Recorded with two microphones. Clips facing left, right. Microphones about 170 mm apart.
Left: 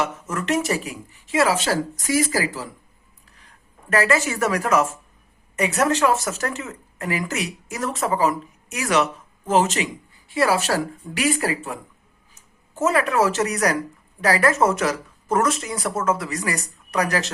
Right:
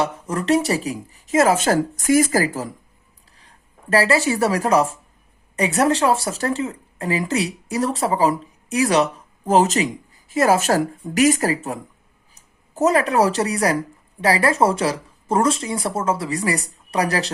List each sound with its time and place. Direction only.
0.0 s a woman's voice: 35° right (ahead or behind)
3.3 s a woman's voice: 30° right (ahead or behind)